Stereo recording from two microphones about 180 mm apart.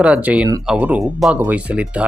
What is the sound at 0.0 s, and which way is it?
Speech, 5° right (ahead or behind).